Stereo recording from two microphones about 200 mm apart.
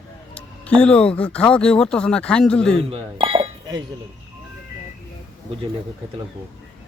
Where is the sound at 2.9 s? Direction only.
25° right (ahead or behind).